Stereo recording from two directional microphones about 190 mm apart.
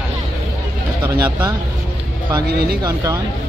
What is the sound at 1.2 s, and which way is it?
Speech, 20° right (ahead or behind).